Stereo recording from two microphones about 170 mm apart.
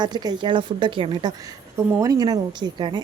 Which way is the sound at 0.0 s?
25° right (ahead or behind).